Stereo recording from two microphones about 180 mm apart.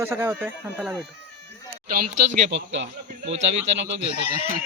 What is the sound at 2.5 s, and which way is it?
Speech, 90° right.